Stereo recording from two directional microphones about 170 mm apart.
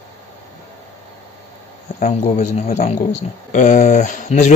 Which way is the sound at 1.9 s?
45° left (ahead or behind).